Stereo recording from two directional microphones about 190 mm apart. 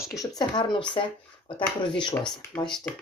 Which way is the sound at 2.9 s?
5° left (ahead or behind).